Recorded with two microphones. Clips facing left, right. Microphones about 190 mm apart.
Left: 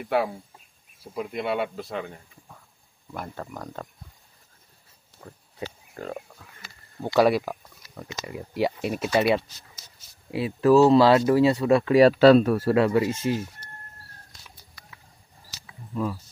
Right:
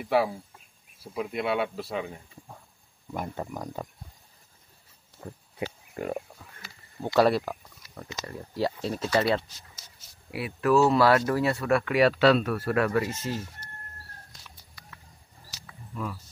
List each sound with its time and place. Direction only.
0.0 s speech: centre (ahead or behind)
3.1 s speech: 15° right (ahead or behind)
5.6 s a sound: 15° right (ahead or behind)
7.2 s speech: 10° left (ahead or behind)
10.3 s speech: 25° left (ahead or behind)
12.2 s speech: 40° left (ahead or behind)
12.7 s speech: 20° left (ahead or behind)
15.9 s speech: 30° left (ahead or behind)